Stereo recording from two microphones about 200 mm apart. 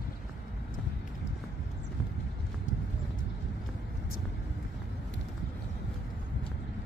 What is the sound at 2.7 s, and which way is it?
Clip-clop, 40° left (ahead or behind).